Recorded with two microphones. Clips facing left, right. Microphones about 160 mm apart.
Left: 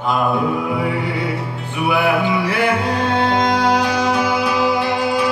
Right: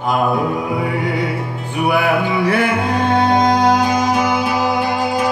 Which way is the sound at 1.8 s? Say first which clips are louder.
Right 1 dB; 50° right (ahead or behind).